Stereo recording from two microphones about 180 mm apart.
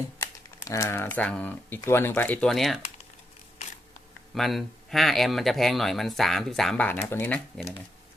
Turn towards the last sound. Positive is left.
turn(degrees=10)  # may be behind; listen again after turning